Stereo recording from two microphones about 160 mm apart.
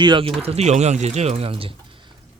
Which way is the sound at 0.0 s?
30° right (ahead or behind).